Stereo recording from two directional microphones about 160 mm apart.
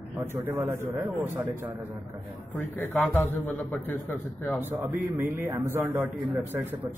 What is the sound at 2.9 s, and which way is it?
Speech, 10° left (ahead or behind).